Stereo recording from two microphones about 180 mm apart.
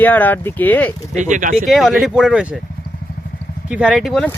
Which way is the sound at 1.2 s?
45° right (ahead or behind).